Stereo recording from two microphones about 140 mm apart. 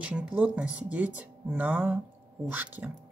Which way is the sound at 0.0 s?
10° right (ahead or behind).